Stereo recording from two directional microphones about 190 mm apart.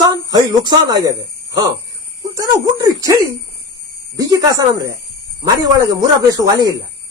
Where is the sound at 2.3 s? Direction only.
20° right (ahead or behind).